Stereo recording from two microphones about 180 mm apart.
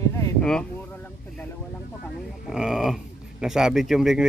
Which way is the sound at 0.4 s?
5° left (ahead or behind).